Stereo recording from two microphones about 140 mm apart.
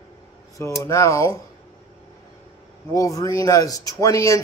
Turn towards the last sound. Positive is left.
turn(degrees=20)  # may be behind; listen again after turning